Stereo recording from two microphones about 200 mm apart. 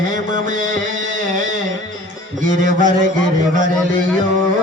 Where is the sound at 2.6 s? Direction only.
40° right (ahead or behind).